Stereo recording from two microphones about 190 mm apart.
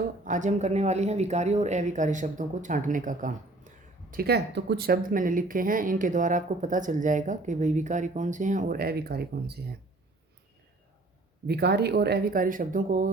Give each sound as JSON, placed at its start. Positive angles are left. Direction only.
{"t": 0.3, "sound": "speech", "side_deg": -40}
{"t": 4.1, "sound": "speech", "side_deg": -55}
{"t": 11.4, "sound": "speech", "side_deg": -60}